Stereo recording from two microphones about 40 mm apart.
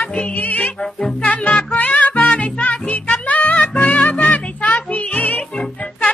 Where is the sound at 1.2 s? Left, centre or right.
Left.